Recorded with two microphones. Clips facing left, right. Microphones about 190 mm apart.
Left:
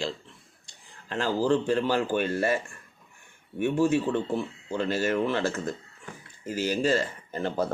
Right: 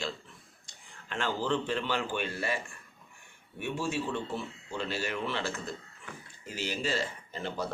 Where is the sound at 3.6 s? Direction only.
50° left (ahead or behind).